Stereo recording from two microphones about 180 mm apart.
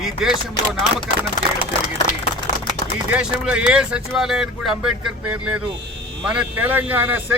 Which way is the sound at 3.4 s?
5° right (ahead or behind).